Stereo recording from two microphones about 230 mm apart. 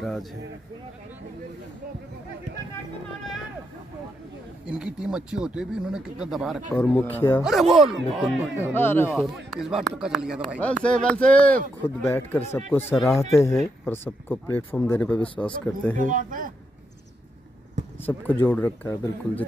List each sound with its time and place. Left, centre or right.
0.0 s speech: centre
4.6 s speech: centre
6.7 s speech: centre
7.4 s speech: centre
8.7 s speech: centre
9.1 s speech: centre
16.0 s speech: right
18.0 s speech: centre